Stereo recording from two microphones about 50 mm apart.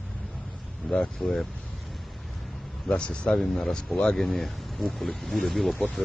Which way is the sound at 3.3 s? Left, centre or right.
Centre.